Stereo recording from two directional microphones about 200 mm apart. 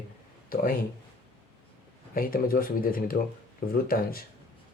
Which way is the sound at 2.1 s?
45° left (ahead or behind).